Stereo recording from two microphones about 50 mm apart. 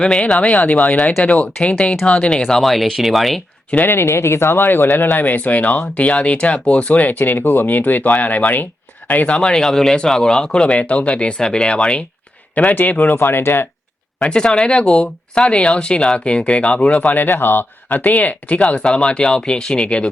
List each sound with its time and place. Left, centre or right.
0.0 s speech: centre
0.3 s speech: left
2.5 s speech: centre
3.8 s speech: left
9.4 s speech: centre
12.5 s speech: left
13.1 s speech: left
14.2 s speech: centre
17.2 s speech: left
18.8 s speech: centre